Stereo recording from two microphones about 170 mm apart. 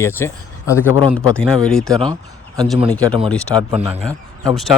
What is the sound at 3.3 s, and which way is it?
Speech, 5° left (ahead or behind).